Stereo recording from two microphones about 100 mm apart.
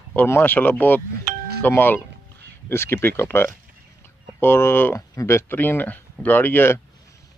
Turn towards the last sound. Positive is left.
turn(degrees=20)  # may be behind; listen again after turning